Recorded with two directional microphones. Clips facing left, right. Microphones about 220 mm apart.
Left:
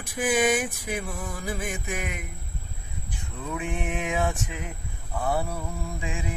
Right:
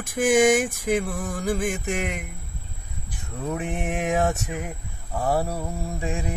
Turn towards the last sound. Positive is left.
turn(degrees=-40)  # may be behind; listen again after turning